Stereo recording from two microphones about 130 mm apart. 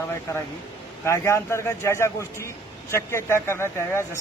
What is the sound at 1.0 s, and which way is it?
A man's voice, 20° left (ahead or behind).